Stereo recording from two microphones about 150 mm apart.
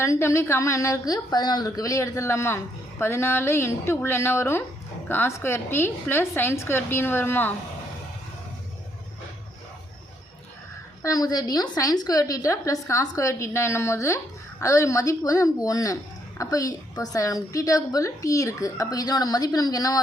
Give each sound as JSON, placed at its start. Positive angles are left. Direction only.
{"t": 0.0, "sound": "a woman's voice", "side_deg": 20}
{"t": 11.0, "sound": "a woman's voice", "side_deg": 25}